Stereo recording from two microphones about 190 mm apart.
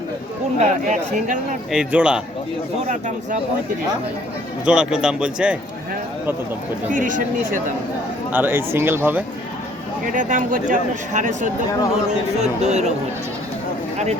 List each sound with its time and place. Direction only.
0.6 s speech: 40° right (ahead or behind)
1.7 s speech: 5° right (ahead or behind)
4.6 s speech: 5° right (ahead or behind)
6.9 s speech: 45° right (ahead or behind)
8.3 s speech: 10° right (ahead or behind)
10.1 s speech: 40° right (ahead or behind)